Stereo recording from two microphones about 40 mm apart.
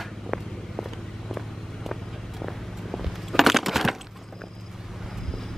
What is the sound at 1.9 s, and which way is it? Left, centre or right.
Shuffling cards, centre.